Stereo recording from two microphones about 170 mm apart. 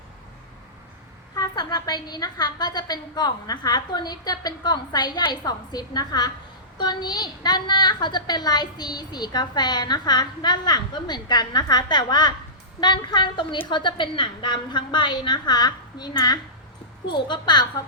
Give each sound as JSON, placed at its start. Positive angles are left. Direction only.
{"t": 1.4, "sound": "a woman's voice", "side_deg": 25}